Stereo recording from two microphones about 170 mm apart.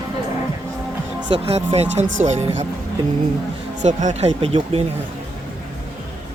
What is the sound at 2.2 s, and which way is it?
Speech, 40° right (ahead or behind).